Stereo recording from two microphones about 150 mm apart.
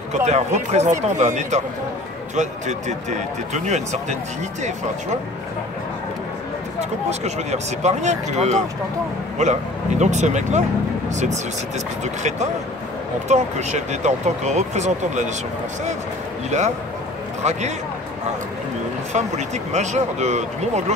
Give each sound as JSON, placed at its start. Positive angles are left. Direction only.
{"t": 0.2, "sound": "speech", "side_deg": -45}
{"t": 6.8, "sound": "speech", "side_deg": -50}
{"t": 12.0, "sound": "speech", "side_deg": -50}
{"t": 16.4, "sound": "speech", "side_deg": -50}
{"t": 19.1, "sound": "speech", "side_deg": -50}